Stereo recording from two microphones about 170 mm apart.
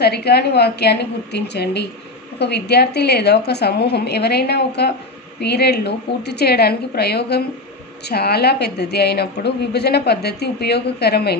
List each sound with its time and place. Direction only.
0.0 s a woman's voice: 70° left (ahead or behind)